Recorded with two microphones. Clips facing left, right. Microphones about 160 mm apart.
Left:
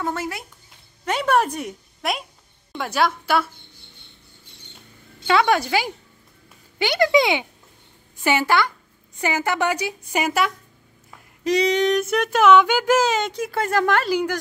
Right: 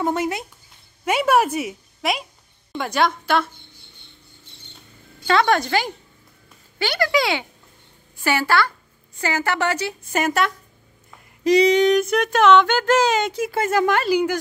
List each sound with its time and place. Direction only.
0.0 s speech: 20° right (ahead or behind)
1.0 s a woman's voice: 10° right (ahead or behind)
5.2 s a woman's voice: 5° left (ahead or behind)
6.8 s a woman's voice: 20° left (ahead or behind)
11.4 s speech: centre (ahead or behind)